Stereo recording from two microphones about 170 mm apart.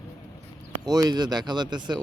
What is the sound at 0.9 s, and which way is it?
Speech, 25° right (ahead or behind).